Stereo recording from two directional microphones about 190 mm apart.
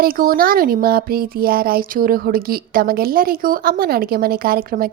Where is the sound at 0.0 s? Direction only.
50° right (ahead or behind).